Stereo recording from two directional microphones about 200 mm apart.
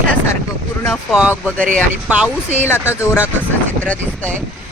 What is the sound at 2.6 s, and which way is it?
Speech, 10° left (ahead or behind).